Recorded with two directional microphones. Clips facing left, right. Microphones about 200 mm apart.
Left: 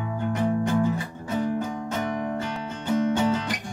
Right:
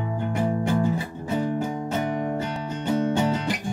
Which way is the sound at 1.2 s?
30° right (ahead or behind).